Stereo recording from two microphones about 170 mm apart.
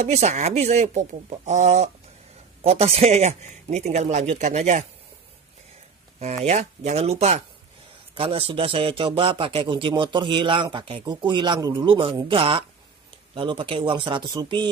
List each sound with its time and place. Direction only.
0.0 s a man's voice: 40° right (ahead or behind)
6.1 s a man's voice: 40° right (ahead or behind); by 14.7 s 25° right (ahead or behind)